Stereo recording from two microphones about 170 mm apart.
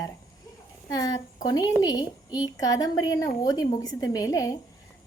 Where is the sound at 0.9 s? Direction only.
20° left (ahead or behind).